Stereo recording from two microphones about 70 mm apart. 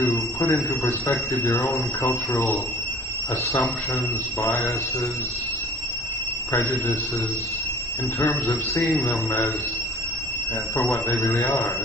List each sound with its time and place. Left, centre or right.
0.4 s speech: left
4.4 s speech: left
6.5 s speech: left